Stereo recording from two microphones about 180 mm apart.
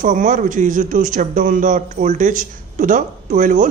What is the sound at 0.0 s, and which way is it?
Speech, 45° right (ahead or behind).